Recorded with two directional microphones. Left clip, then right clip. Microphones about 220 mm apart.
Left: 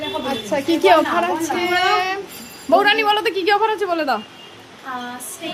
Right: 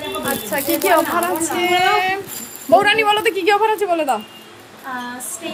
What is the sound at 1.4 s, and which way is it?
A child's voice, centre (ahead or behind).